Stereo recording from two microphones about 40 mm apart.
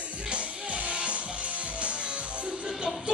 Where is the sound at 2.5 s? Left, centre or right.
Centre.